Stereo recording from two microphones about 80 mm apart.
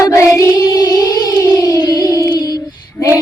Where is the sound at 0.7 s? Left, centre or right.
Left.